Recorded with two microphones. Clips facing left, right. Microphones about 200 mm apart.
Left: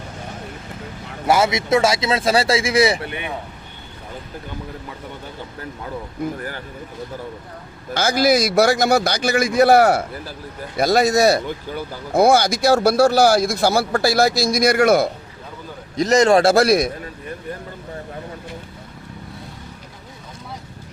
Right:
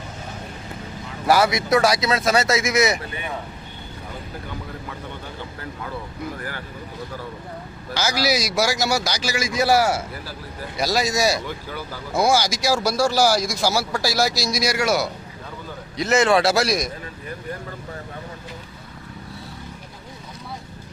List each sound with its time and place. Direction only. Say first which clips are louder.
1.3 s speech: left 1 dB; 25° left (ahead or behind)
7.9 s speech: left 6 dB; 50° left (ahead or behind)
16.0 s a man's voice: left 4 dB; 40° left (ahead or behind); by 16.9 s 55° left (ahead or behind)